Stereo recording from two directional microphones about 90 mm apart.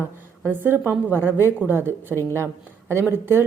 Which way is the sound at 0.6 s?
25° right (ahead or behind).